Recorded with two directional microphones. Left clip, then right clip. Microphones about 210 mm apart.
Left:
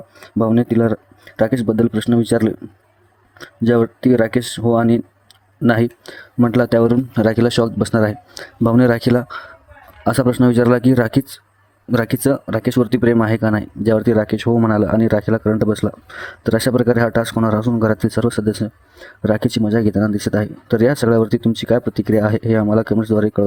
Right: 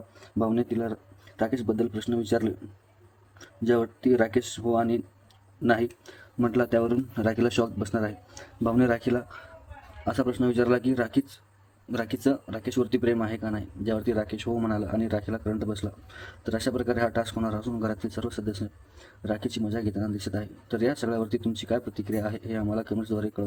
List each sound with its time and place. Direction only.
0.2 s speech: 45° left (ahead or behind)